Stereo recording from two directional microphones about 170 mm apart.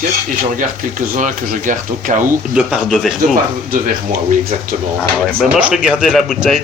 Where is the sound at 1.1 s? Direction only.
50° right (ahead or behind).